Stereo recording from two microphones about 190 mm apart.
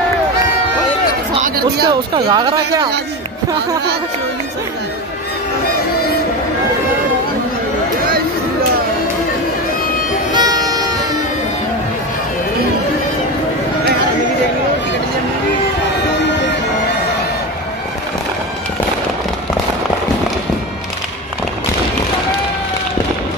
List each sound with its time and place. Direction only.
1.4 s speech: 55° right (ahead or behind)
1.9 s speech: 20° right (ahead or behind)
10.3 s music: 20° right (ahead or behind)